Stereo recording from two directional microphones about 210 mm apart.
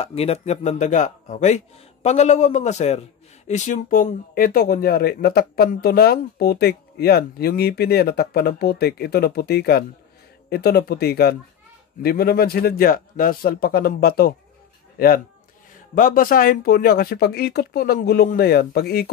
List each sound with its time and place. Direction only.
0.0 s a man's voice: 30° left (ahead or behind); by 19.0 s 45° left (ahead or behind)